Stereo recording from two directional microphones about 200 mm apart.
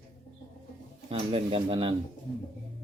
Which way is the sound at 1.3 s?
30° right (ahead or behind).